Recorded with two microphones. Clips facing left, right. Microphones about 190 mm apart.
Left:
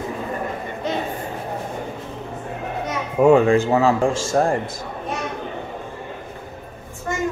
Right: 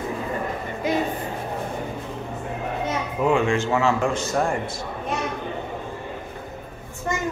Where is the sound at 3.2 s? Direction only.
40° left (ahead or behind).